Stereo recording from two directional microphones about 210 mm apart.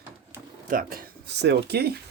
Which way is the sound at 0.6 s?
40° right (ahead or behind).